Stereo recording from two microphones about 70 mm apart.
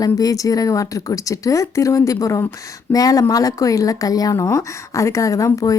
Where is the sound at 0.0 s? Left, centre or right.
Left.